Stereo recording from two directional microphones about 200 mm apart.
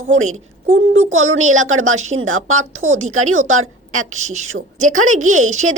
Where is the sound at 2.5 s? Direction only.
35° right (ahead or behind).